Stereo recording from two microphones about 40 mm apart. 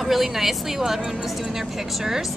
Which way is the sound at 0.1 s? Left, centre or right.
Centre.